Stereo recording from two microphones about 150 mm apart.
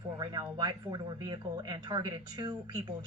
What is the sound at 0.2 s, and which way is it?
Speech, 30° right (ahead or behind).